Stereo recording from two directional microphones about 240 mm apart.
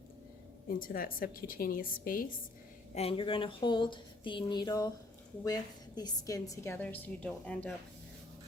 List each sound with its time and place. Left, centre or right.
0.7 s a woman's voice: left
2.9 s speech: left
6.0 s a woman's voice: centre